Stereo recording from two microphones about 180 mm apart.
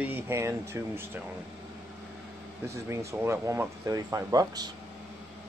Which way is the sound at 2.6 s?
15° right (ahead or behind).